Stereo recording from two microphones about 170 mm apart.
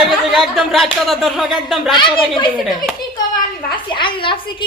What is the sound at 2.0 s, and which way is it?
Speech, 30° left (ahead or behind).